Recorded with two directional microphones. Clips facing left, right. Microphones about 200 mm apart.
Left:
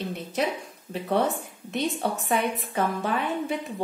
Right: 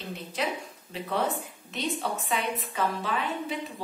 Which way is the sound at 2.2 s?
50° left (ahead or behind).